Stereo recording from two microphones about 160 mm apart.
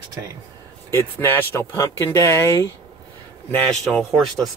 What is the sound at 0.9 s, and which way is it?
Speech, 15° left (ahead or behind).